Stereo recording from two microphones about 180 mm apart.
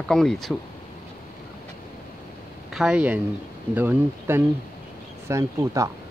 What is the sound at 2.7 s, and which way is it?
Speech, 5° right (ahead or behind).